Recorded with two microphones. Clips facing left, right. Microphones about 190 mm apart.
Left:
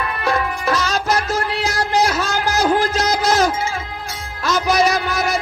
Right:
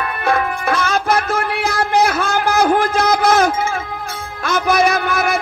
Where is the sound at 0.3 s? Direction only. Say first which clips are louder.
Right 2 dB; 55° right (ahead or behind).